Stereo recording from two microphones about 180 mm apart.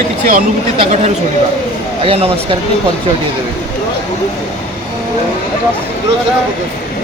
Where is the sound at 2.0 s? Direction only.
30° right (ahead or behind).